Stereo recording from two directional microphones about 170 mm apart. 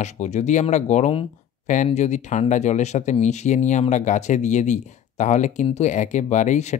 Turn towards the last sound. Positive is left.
turn(degrees=45)  # may be behind; listen again after turning